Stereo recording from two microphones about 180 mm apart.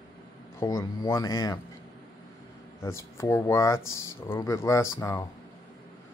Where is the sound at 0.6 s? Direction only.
15° left (ahead or behind).